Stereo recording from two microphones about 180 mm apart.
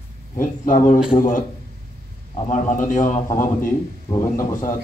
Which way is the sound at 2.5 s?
45° left (ahead or behind).